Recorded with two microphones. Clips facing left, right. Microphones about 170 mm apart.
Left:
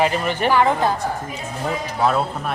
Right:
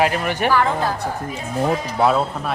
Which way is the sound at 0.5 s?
20° left (ahead or behind).